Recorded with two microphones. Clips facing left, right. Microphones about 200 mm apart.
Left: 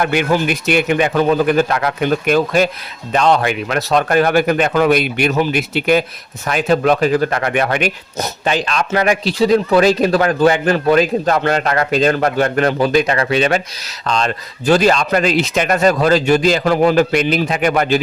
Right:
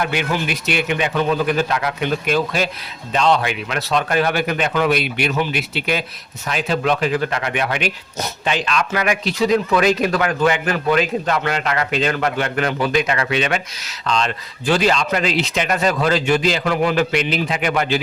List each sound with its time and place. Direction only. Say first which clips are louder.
0.0 s speech: left 6 dB; 50° left (ahead or behind)